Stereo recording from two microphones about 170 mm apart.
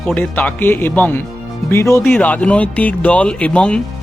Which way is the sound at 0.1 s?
10° left (ahead or behind).